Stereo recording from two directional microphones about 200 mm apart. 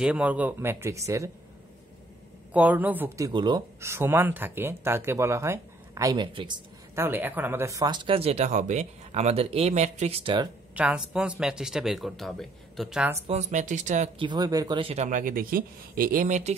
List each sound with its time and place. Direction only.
0.0 s speech: 5° right (ahead or behind)
2.5 s speech: 5° right (ahead or behind); by 6.6 s 25° right (ahead or behind)
7.0 s speech: 10° right (ahead or behind)
10.7 s speech: 5° right (ahead or behind)
13.3 s speech: 35° right (ahead or behind)